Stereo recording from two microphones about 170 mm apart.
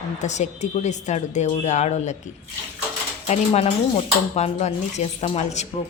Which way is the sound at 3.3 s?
45° left (ahead or behind).